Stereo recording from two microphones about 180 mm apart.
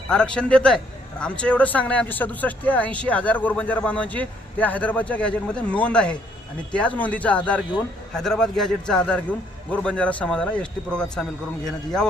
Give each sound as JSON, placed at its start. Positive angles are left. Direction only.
{"t": 0.1, "sound": "a man's voice", "side_deg": 5}